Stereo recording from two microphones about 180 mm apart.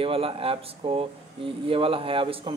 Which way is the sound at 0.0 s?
30° right (ahead or behind).